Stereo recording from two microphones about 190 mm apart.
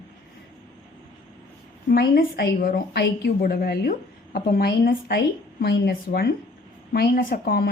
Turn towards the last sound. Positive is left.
turn(degrees=50)  # may be behind; listen again after turning